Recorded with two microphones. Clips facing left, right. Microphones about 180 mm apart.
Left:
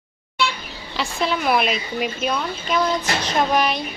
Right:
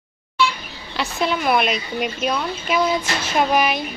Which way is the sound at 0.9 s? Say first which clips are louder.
Right 1 dB; centre (ahead or behind).